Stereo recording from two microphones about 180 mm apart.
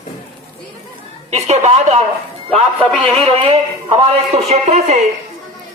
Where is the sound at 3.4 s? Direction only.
35° right (ahead or behind).